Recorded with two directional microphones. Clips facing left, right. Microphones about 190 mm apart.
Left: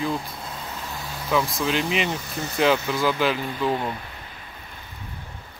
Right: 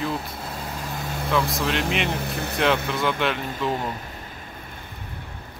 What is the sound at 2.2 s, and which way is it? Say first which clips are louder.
Speech: right 3 dB; 60° right (ahead or behind).